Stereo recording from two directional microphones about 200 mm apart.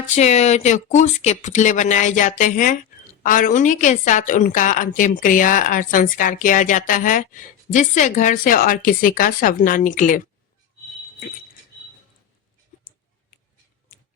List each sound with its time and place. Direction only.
0.1 s a woman's voice: 35° left (ahead or behind)